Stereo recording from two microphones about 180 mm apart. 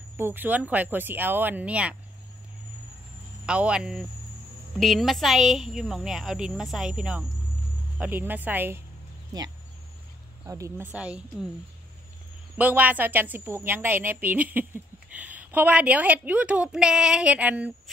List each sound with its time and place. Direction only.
0.2 s a woman's voice: 10° right (ahead or behind)
3.4 s a woman's voice: 5° right (ahead or behind)
9.3 s a woman's voice: 20° right (ahead or behind); by 11.4 s 5° right (ahead or behind)
12.5 s a woman's voice: 10° right (ahead or behind)